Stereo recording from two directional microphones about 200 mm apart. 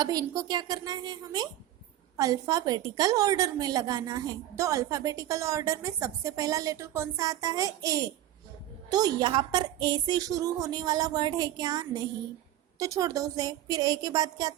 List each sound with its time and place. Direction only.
0.0 s a woman's voice: 20° right (ahead or behind)